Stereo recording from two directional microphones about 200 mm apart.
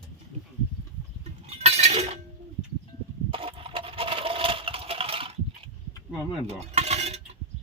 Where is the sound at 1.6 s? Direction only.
30° right (ahead or behind).